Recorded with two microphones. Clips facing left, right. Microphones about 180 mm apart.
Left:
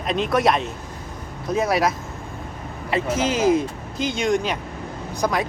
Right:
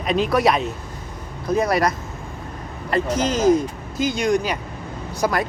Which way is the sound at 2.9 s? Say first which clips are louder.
Right 1 dB; 5° left (ahead or behind).